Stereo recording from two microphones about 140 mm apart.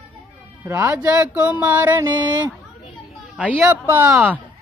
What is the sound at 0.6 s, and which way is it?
Speech, 20° right (ahead or behind).